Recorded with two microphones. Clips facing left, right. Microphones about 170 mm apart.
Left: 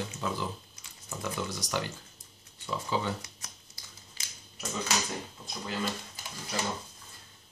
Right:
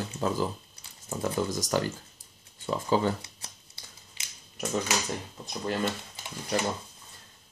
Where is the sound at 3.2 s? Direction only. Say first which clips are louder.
Even; 30° right (ahead or behind).